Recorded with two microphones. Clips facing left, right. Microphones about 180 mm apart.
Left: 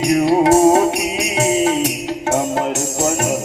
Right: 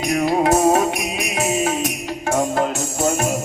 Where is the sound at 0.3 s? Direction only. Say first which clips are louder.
Left 4 dB; 30° left (ahead or behind).